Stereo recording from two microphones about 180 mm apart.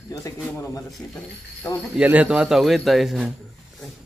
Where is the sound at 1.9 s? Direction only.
5° right (ahead or behind).